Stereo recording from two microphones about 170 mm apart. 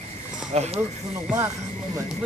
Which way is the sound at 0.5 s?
40° right (ahead or behind).